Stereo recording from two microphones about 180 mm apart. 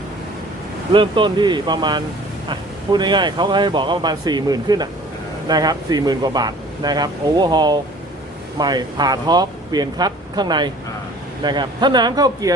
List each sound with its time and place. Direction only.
0.9 s speech: 25° right (ahead or behind)